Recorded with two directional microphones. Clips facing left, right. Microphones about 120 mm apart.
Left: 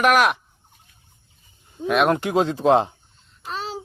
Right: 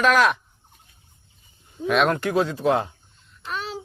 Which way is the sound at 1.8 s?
Centre (ahead or behind).